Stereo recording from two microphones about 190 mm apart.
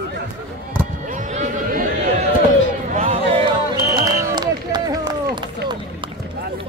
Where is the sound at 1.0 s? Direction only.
40° right (ahead or behind); by 5.1 s 20° right (ahead or behind).